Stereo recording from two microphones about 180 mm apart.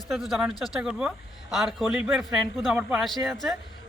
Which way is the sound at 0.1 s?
Centre (ahead or behind).